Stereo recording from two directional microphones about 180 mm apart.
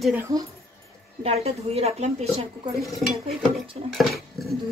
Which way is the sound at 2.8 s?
Centre (ahead or behind).